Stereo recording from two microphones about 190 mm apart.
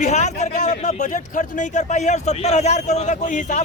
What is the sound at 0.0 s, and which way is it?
Speech, 35° left (ahead or behind).